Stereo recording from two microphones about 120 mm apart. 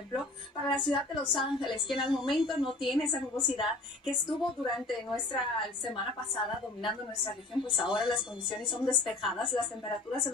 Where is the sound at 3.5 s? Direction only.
45° left (ahead or behind).